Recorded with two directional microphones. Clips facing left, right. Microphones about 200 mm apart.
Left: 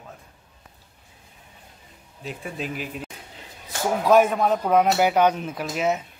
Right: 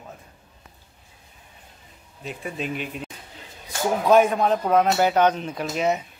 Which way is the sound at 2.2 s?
Centre (ahead or behind).